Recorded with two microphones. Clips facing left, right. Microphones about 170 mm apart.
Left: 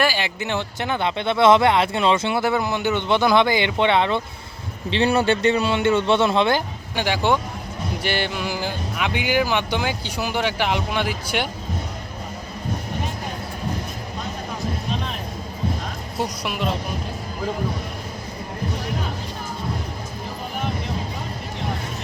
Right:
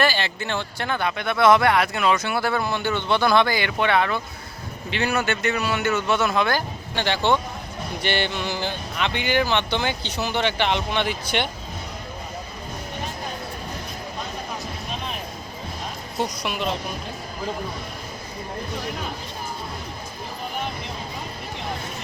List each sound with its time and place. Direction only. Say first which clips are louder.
0.0 s speech: left 1 dB; 10° left (ahead or behind)
6.9 s speech: left 1 dB; 10° left (ahead or behind)
16.1 s a woman's voice: even; 5° left (ahead or behind)